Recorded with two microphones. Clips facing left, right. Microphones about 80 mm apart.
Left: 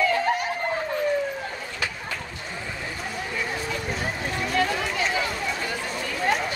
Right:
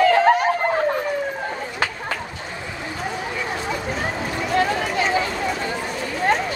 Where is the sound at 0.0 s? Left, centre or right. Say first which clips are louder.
Right 8 dB; right.